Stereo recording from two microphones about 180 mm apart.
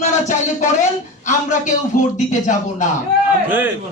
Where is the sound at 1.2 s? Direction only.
45° left (ahead or behind).